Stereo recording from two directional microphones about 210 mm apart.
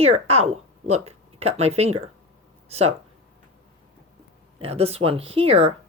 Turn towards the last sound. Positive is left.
turn(degrees=-30)  # may be behind; listen again after turning